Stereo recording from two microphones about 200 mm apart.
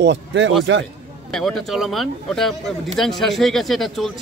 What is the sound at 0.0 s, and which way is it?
Speech, 65° right (ahead or behind).